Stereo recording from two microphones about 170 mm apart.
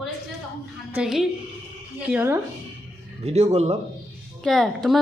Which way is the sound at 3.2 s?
40° right (ahead or behind).